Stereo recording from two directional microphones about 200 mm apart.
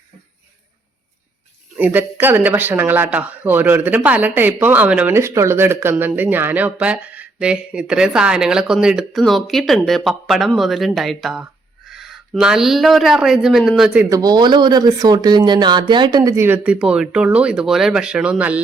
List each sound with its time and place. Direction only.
1.7 s speech: 10° right (ahead or behind)
14.1 s speech: 20° right (ahead or behind)